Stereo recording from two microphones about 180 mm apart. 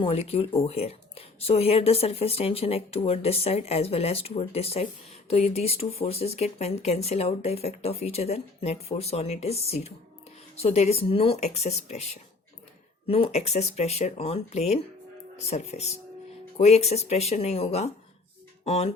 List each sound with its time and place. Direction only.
0.0 s speech: 35° left (ahead or behind)